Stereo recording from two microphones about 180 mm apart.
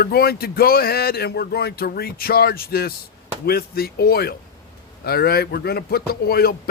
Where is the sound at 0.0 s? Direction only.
60° left (ahead or behind).